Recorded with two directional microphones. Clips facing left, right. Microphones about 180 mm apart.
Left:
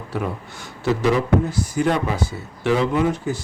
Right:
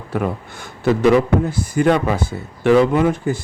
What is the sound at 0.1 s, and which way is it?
A man's voice, 55° right (ahead or behind).